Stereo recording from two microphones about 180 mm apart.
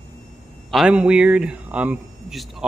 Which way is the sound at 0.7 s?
5° right (ahead or behind).